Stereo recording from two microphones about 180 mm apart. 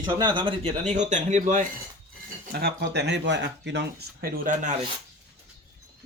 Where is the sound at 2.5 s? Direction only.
60° right (ahead or behind).